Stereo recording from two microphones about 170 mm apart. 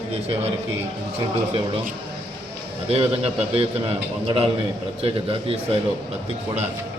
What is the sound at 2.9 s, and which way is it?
Speech, 35° right (ahead or behind).